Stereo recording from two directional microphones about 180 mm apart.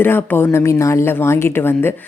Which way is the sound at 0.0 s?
10° left (ahead or behind).